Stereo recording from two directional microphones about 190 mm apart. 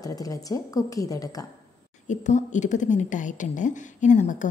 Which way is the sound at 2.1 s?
40° left (ahead or behind).